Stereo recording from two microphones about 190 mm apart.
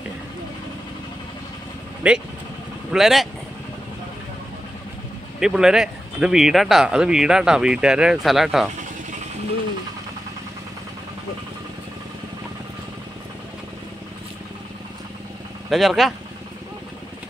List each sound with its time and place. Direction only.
2.0 s speech: 5° right (ahead or behind)
5.4 s speech: 5° right (ahead or behind)
15.7 s speech: centre (ahead or behind)